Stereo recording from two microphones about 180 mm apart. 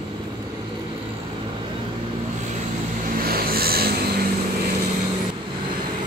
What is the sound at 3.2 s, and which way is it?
Vehicle, 55° right (ahead or behind).